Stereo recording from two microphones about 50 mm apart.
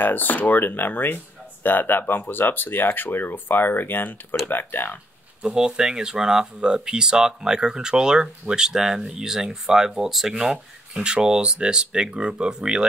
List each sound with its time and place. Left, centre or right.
0.0 s speech: left
5.4 s speech: centre